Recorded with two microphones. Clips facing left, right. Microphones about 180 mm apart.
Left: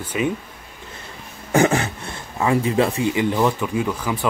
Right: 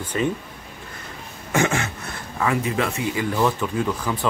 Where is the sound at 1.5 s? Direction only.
35° left (ahead or behind).